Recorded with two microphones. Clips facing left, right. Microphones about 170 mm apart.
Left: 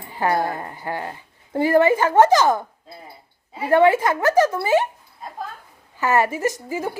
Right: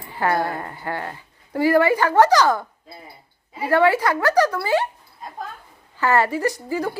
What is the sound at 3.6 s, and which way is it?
A woman's voice, 20° left (ahead or behind).